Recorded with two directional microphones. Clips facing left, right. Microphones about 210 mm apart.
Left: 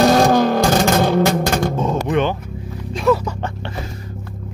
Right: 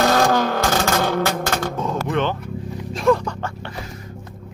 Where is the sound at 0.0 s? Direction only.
15° left (ahead or behind).